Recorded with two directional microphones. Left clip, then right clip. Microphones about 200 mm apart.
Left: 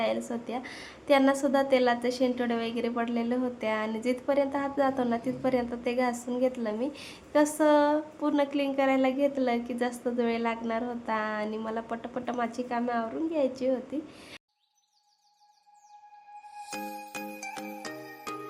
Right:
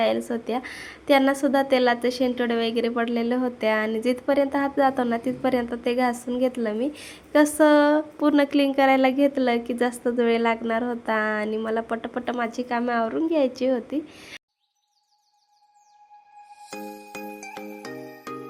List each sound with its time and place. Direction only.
0.0 s a woman's voice: 20° right (ahead or behind)
16.6 s music: centre (ahead or behind)